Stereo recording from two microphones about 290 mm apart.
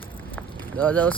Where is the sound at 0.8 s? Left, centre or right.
Centre.